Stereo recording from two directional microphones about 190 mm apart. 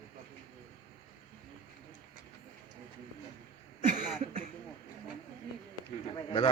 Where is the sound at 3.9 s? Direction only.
40° right (ahead or behind).